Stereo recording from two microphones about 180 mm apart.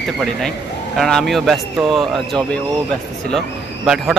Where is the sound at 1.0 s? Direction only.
Centre (ahead or behind).